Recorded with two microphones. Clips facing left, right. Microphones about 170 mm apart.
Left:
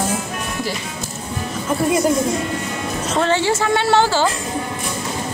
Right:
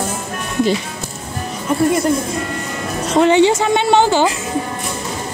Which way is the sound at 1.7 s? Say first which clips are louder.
Right 4 dB; centre (ahead or behind).